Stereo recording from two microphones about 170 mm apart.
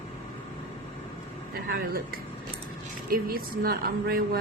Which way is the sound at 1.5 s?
60° right (ahead or behind).